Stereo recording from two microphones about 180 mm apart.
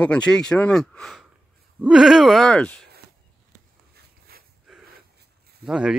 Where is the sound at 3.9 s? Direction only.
60° right (ahead or behind).